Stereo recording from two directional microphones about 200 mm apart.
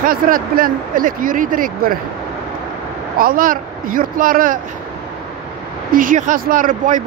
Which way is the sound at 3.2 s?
45° right (ahead or behind).